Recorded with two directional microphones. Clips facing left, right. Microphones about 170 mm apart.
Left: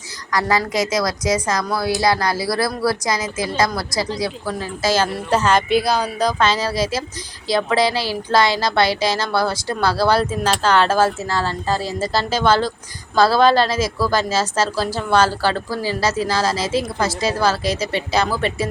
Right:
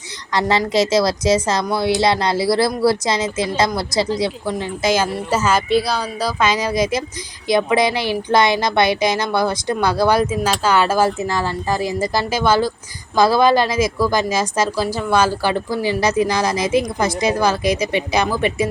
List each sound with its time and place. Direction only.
0.3 s speech: 25° right (ahead or behind)
5.1 s speech: 5° right (ahead or behind)